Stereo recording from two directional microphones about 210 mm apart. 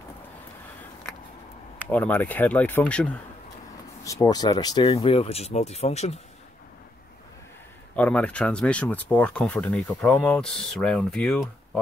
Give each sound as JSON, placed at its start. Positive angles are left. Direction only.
{"t": 1.9, "sound": "speech", "side_deg": 10}
{"t": 7.9, "sound": "speech", "side_deg": 5}